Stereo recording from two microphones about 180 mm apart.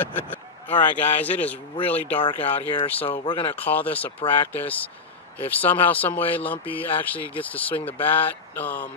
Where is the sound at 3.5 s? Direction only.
10° left (ahead or behind).